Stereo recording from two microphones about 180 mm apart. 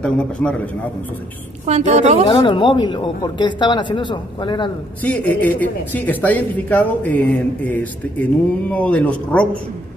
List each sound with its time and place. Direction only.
0.0 s speech: 5° left (ahead or behind)
1.7 s a woman's voice: 40° right (ahead or behind)
2.2 s speech: 30° left (ahead or behind)
5.0 s speech: 10° left (ahead or behind)